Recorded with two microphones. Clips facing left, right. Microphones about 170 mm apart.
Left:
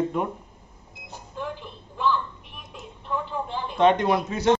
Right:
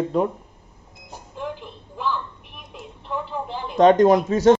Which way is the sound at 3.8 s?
40° right (ahead or behind).